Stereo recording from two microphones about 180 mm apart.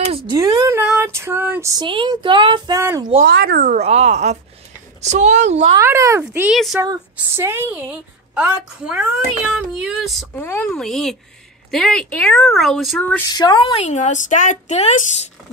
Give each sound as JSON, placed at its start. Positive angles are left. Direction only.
{"t": 0.3, "sound": "a sound", "side_deg": -20}
{"t": 3.3, "sound": "speech", "side_deg": -60}
{"t": 3.8, "sound": "speech", "side_deg": -35}
{"t": 5.8, "sound": "a woman's voice", "side_deg": -15}
{"t": 6.8, "sound": "a woman's voice", "side_deg": -15}
{"t": 10.3, "sound": "a woman's voice", "side_deg": 10}
{"t": 13.3, "sound": "speech", "side_deg": 25}